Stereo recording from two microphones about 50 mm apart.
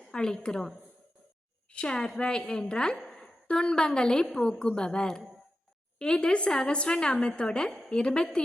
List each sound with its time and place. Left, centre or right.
0.1 s a woman's voice: centre
1.7 s a woman's voice: centre